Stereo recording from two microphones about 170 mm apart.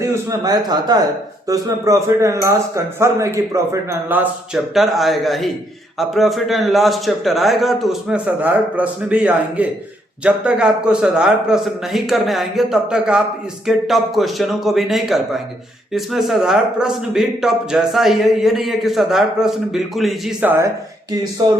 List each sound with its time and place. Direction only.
0.0 s a man's voice: 20° right (ahead or behind); by 20.3 s centre (ahead or behind)
20.4 s speech: 10° right (ahead or behind)